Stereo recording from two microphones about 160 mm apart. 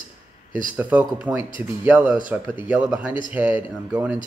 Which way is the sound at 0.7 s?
10° right (ahead or behind).